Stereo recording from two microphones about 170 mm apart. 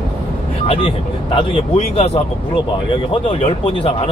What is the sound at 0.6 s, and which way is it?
Speech, 35° left (ahead or behind).